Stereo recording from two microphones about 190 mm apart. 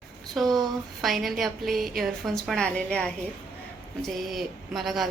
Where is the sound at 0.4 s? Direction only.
Centre (ahead or behind).